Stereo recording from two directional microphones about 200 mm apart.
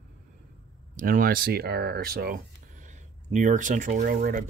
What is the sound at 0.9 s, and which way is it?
Speech, 45° right (ahead or behind).